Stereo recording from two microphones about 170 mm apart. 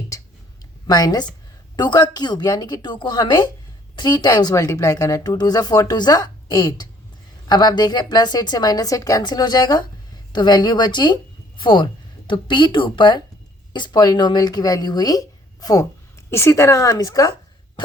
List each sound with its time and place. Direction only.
0.9 s a woman's voice: 25° left (ahead or behind)